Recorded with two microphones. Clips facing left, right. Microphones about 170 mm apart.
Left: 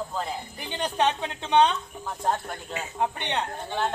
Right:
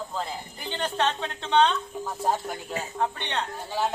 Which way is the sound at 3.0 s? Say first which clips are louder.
Left 2 dB; 15° left (ahead or behind).